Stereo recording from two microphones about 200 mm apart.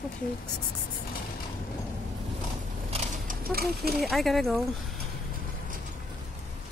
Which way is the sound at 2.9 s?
40° right (ahead or behind).